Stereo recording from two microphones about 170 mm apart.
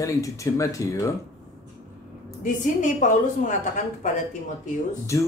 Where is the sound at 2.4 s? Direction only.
50° left (ahead or behind).